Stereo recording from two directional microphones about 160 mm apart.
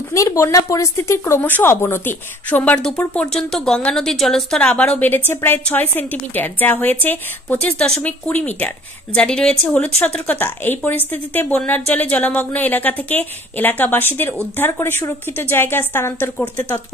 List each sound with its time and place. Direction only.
0.1 s speech: 20° left (ahead or behind)